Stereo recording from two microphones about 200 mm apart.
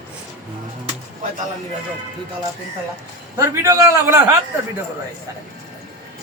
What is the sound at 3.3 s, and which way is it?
Speech, 15° right (ahead or behind).